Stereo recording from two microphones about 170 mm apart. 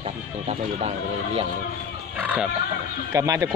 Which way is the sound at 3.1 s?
20° right (ahead or behind).